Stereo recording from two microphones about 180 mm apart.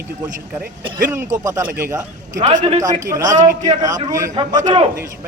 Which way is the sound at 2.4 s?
35° right (ahead or behind).